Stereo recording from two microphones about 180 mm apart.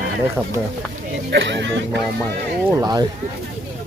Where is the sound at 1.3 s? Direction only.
80° right.